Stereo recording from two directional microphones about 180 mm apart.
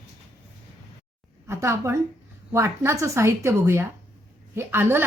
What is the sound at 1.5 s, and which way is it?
A woman's voice, 15° right (ahead or behind).